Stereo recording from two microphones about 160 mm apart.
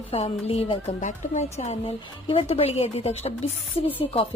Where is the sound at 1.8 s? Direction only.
35° left (ahead or behind).